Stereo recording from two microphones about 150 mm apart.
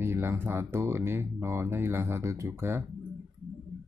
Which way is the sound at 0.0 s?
15° right (ahead or behind).